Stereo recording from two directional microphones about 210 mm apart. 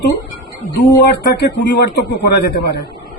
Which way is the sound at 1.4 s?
55° left (ahead or behind).